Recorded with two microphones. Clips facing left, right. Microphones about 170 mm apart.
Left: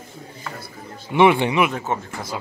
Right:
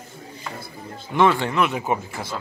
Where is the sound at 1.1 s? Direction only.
15° left (ahead or behind).